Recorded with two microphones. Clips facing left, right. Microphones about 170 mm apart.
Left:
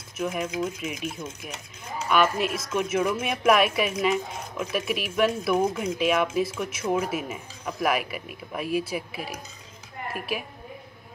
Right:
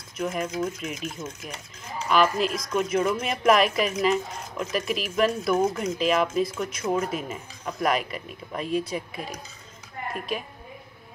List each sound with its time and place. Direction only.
0.2 s a woman's voice: 5° left (ahead or behind)